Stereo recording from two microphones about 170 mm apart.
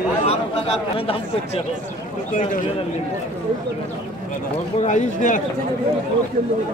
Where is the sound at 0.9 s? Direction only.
35° left (ahead or behind).